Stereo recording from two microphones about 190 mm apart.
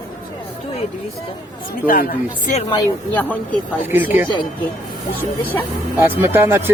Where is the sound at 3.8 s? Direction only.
10° right (ahead or behind).